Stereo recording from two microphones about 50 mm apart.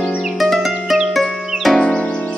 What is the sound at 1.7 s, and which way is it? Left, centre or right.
Music, centre.